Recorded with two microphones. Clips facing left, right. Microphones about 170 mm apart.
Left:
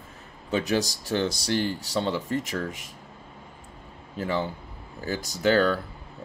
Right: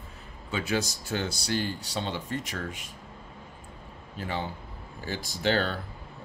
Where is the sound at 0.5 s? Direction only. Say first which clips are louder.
Left 4 dB; 40° left (ahead or behind).